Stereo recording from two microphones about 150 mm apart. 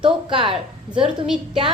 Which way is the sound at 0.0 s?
35° right (ahead or behind).